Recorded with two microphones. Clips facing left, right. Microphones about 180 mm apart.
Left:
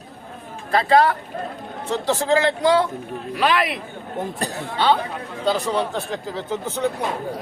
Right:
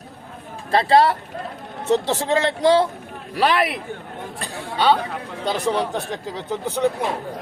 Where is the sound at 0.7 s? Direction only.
30° right (ahead or behind).